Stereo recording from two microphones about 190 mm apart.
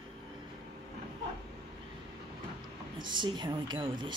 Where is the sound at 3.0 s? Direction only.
25° right (ahead or behind).